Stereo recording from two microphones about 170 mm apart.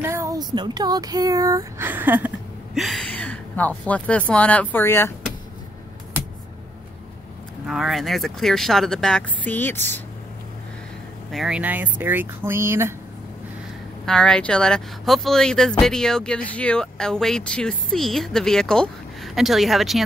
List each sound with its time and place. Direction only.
0.0 s speech: 15° right (ahead or behind)
2.7 s speech: centre (ahead or behind)
7.6 s speech: centre (ahead or behind)
11.3 s speech: 5° right (ahead or behind)
14.0 s speech: 5° left (ahead or behind)